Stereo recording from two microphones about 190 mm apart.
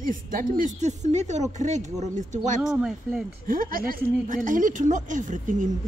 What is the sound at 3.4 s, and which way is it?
Speech, 50° right (ahead or behind).